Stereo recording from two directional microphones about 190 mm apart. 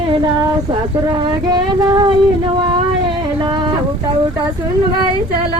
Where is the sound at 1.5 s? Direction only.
20° right (ahead or behind).